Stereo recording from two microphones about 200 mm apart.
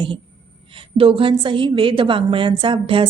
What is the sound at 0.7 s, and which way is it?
A woman's voice, 25° right (ahead or behind).